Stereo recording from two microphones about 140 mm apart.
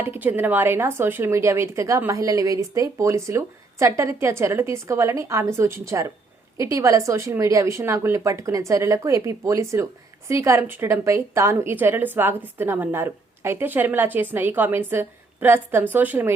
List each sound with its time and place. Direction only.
0.0 s a woman's voice: 15° right (ahead or behind)